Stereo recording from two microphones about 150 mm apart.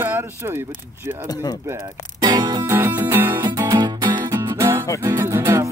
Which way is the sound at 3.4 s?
25° right (ahead or behind).